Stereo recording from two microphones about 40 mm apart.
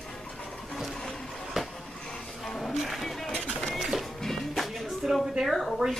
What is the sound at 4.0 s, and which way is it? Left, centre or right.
Music, centre.